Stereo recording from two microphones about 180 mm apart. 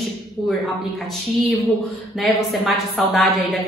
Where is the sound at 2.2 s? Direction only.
Centre (ahead or behind).